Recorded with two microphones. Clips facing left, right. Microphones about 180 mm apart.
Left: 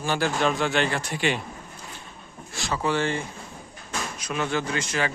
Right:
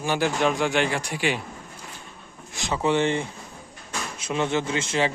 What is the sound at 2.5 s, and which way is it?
A man's voice, 20° right (ahead or behind).